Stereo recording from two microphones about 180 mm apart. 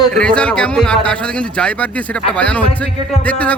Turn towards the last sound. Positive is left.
turn(degrees=10)  # may be behind; listen again after turning